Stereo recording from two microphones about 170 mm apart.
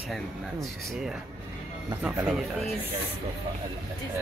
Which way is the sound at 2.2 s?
Centre (ahead or behind).